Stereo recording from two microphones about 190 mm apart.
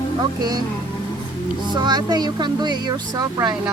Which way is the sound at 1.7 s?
20° right (ahead or behind).